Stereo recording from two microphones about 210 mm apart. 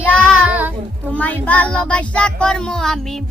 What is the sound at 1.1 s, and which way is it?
Speech, 5° left (ahead or behind).